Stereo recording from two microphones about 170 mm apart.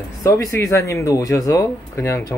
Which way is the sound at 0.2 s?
20° left (ahead or behind).